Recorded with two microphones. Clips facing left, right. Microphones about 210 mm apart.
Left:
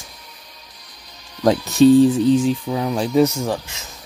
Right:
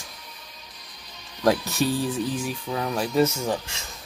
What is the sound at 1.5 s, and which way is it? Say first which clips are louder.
Speech: left 10 dB; 25° left (ahead or behind).